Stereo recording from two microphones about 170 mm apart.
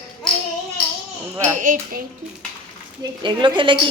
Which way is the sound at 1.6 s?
50° right (ahead or behind).